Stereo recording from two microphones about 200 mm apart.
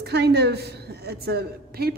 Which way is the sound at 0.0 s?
55° right (ahead or behind).